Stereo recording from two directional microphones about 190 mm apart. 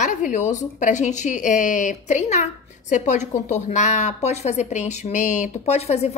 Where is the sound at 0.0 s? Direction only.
40° left (ahead or behind).